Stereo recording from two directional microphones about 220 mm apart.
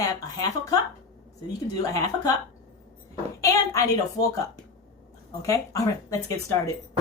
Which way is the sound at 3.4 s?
15° left (ahead or behind).